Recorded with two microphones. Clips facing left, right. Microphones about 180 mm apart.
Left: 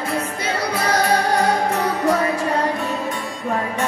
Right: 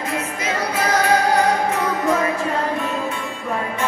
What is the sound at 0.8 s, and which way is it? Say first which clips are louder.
Music: right 1 dB; 35° left (ahead or behind).